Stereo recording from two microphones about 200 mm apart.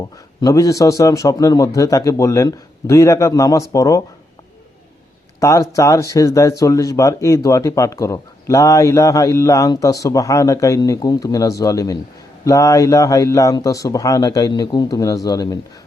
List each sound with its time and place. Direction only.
0.4 s speech: 15° left (ahead or behind)
5.4 s speech: 15° left (ahead or behind)